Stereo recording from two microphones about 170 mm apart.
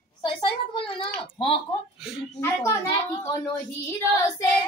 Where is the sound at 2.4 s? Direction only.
15° left (ahead or behind).